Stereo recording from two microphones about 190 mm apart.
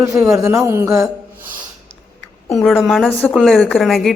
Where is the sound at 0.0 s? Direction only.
15° right (ahead or behind).